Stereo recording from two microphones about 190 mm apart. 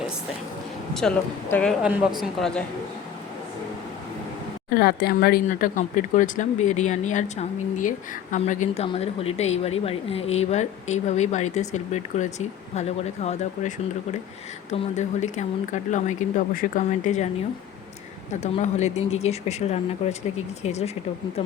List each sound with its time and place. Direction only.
0.9 s speech: 5° left (ahead or behind)
1.8 s speech: 5° right (ahead or behind)
4.7 s speech: 50° left (ahead or behind)
18.3 s speech: 35° left (ahead or behind)